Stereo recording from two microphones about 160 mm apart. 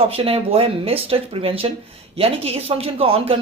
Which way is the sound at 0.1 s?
40° right (ahead or behind).